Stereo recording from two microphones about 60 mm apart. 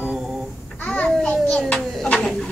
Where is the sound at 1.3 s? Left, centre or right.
Left.